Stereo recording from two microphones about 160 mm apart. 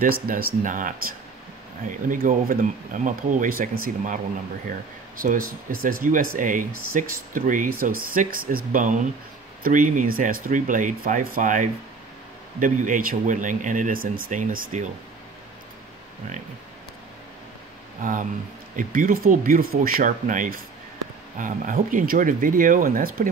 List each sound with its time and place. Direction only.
0.0 s speech: 60° right (ahead or behind)
2.0 s speech: 60° right (ahead or behind)
5.2 s speech: 60° right (ahead or behind)
18.0 s speech: 60° right (ahead or behind)